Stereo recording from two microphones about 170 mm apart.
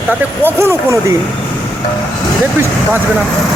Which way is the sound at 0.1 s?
15° right (ahead or behind).